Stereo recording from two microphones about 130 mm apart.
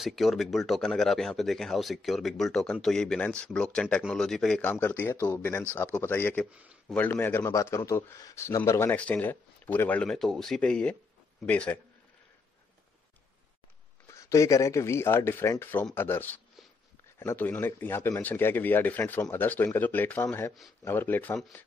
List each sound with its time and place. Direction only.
0.0 s speech: centre (ahead or behind)
4.6 s a man's voice: 15° left (ahead or behind)
14.0 s a man's voice: 25° left (ahead or behind)